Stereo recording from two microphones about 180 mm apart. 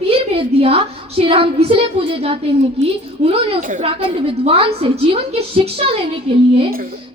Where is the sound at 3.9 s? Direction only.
30° right (ahead or behind).